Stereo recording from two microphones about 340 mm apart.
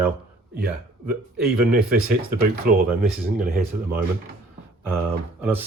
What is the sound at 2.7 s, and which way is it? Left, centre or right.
Speech, right.